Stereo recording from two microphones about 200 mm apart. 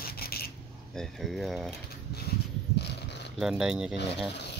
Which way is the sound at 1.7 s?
55° left (ahead or behind).